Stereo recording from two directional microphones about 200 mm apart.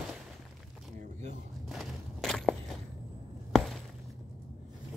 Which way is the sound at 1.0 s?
40° right (ahead or behind).